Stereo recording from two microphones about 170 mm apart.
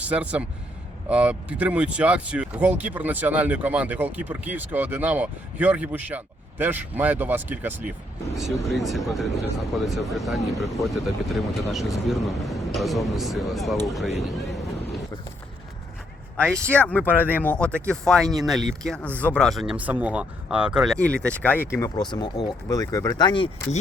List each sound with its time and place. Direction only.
0.0 s speech: 5° right (ahead or behind)
8.6 s speech: centre (ahead or behind)
16.4 s speech: 5° left (ahead or behind); by 23.5 s 25° left (ahead or behind)